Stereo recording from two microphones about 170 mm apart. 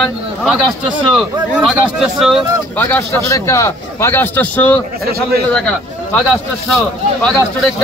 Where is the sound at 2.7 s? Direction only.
10° left (ahead or behind).